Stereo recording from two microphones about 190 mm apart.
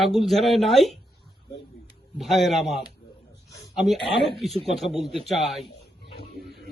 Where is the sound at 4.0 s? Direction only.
Centre (ahead or behind).